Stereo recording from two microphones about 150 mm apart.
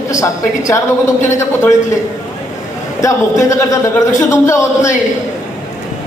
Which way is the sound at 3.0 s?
20° left (ahead or behind).